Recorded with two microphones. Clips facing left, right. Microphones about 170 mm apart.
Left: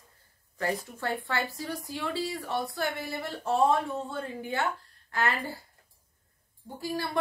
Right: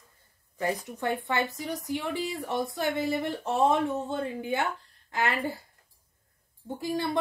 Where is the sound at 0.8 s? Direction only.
20° right (ahead or behind).